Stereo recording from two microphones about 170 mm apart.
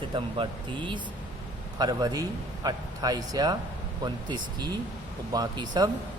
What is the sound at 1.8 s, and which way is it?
A man's voice, 25° right (ahead or behind).